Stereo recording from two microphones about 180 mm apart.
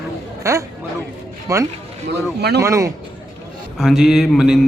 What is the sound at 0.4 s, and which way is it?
A man's voice, 15° right (ahead or behind).